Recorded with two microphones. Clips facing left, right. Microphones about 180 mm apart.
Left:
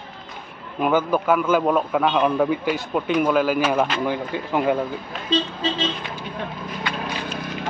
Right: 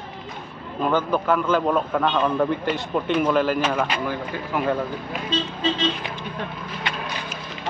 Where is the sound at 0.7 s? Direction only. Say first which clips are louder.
Left 2 dB; 10° left (ahead or behind).